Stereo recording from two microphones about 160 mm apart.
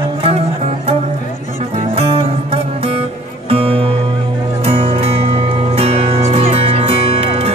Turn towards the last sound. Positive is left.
turn(degrees=-40)  # may be behind; listen again after turning